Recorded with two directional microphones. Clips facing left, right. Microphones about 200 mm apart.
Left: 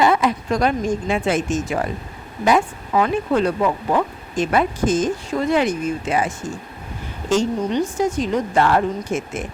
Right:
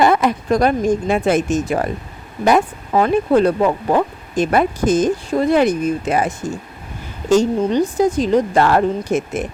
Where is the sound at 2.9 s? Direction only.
40° right (ahead or behind).